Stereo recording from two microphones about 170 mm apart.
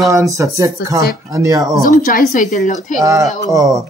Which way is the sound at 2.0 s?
55° left (ahead or behind).